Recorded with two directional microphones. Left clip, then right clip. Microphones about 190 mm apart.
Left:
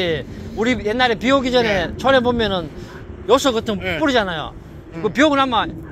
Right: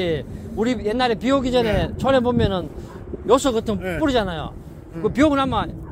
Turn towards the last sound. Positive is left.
turn(degrees=-10)  # may be behind; listen again after turning